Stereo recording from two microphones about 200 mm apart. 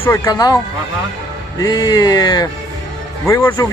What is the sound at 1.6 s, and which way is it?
Speech, 20° left (ahead or behind).